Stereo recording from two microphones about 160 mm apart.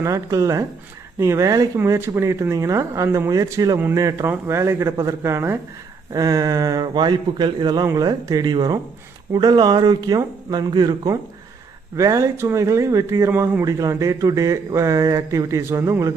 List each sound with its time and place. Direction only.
0.0 s speech: 20° right (ahead or behind)